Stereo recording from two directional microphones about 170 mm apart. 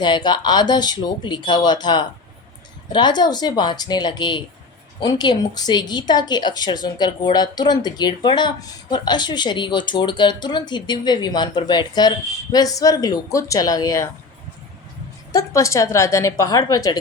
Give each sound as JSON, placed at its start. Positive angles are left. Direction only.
{"t": 0.0, "sound": "speech", "side_deg": 25}
{"t": 15.3, "sound": "speech", "side_deg": 20}